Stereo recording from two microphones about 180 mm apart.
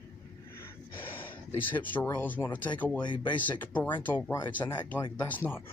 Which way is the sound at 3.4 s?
10° left (ahead or behind).